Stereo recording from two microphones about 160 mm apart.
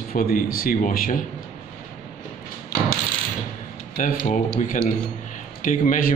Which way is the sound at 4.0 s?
60° left (ahead or behind).